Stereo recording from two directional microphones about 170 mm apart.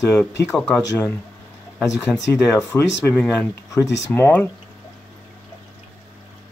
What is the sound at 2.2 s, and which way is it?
Speech, 20° left (ahead or behind).